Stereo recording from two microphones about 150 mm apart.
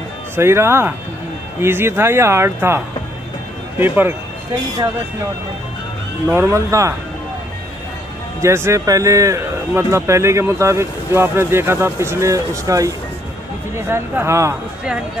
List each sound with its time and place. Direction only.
0.4 s speech: 15° right (ahead or behind)
3.8 s speech: 15° right (ahead or behind)
6.2 s speech: 15° right (ahead or behind)
8.4 s a man's voice: 20° right (ahead or behind)